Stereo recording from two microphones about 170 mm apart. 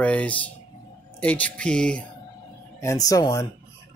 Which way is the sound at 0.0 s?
10° left (ahead or behind).